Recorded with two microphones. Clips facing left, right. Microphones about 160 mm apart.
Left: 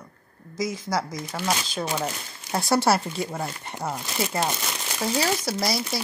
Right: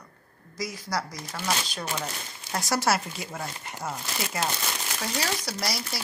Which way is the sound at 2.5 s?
30° left (ahead or behind).